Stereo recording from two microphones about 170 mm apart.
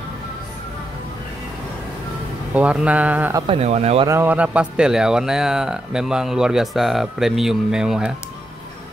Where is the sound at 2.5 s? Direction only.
10° right (ahead or behind).